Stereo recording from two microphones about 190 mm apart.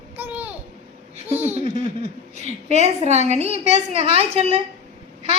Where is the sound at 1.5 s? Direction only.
35° right (ahead or behind).